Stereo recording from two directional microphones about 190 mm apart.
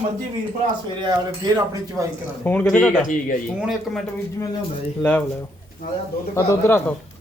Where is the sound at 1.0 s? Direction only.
20° right (ahead or behind).